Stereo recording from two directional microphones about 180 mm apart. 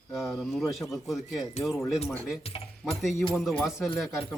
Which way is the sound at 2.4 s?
35° left (ahead or behind).